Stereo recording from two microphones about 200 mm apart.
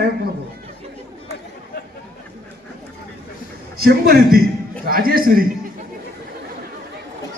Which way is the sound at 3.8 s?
50° right (ahead or behind).